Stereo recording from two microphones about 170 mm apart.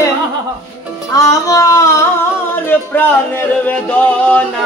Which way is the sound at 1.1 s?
20° left (ahead or behind).